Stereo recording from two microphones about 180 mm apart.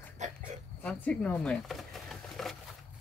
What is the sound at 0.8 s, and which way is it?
Speech, 5° left (ahead or behind).